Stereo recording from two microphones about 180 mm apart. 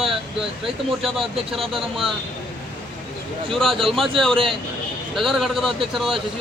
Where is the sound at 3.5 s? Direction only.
Centre (ahead or behind).